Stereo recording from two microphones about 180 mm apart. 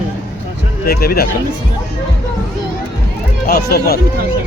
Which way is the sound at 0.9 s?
60° left (ahead or behind).